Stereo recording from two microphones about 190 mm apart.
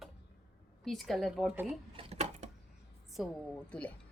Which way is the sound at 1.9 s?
35° right (ahead or behind).